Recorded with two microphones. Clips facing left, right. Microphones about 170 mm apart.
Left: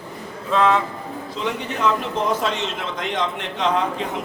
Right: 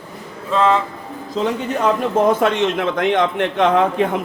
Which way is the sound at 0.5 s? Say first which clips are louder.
Right 2 dB; centre (ahead or behind).